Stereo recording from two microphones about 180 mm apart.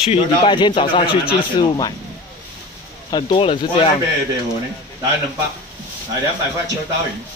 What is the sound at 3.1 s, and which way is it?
Speech, 25° left (ahead or behind).